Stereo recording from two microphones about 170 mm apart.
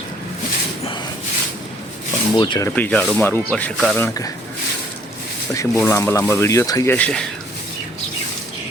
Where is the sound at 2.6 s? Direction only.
10° left (ahead or behind).